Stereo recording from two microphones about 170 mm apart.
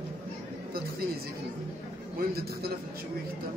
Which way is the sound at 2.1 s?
65° right (ahead or behind).